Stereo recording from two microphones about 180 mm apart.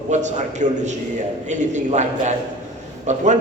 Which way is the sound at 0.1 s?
40° right (ahead or behind).